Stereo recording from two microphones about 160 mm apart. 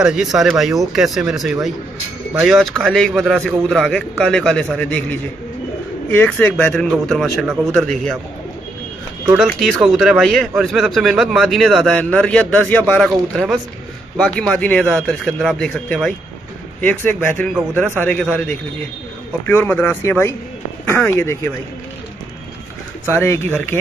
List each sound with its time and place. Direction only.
0.0 s speech: 5° right (ahead or behind)
9.4 s speech: centre (ahead or behind)
14.1 s speech: 5° left (ahead or behind)
19.4 s speech: 10° left (ahead or behind)
23.1 s speech: 15° left (ahead or behind)